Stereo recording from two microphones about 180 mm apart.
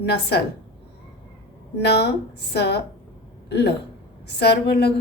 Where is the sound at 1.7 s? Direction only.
65° left (ahead or behind).